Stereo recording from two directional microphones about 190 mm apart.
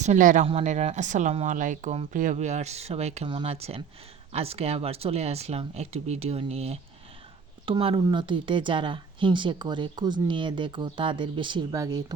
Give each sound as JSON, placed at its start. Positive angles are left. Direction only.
{"t": 0.0, "sound": "speech", "side_deg": -40}